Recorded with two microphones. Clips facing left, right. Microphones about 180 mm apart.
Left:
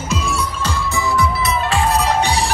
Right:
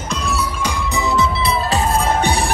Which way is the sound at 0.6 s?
15° right (ahead or behind).